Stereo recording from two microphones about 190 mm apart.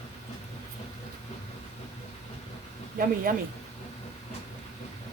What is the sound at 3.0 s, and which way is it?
Speech, 45° right (ahead or behind).